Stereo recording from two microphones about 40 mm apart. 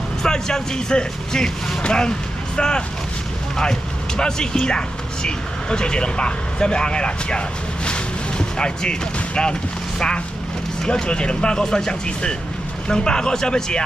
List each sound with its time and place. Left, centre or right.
0.2 s speech: centre
4.2 s speech: centre